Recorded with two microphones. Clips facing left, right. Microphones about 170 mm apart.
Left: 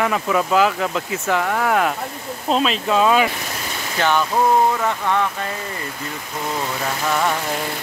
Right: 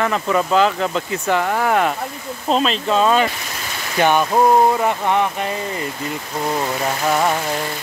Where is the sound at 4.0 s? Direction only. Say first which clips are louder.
Right 3 dB; 15° right (ahead or behind).